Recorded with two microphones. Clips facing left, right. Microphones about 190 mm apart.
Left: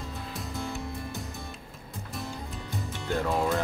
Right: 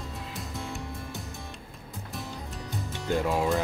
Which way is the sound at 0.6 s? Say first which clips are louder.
Left 3 dB; centre (ahead or behind).